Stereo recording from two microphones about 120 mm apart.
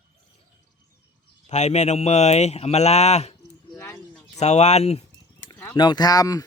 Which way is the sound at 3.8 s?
25° left (ahead or behind).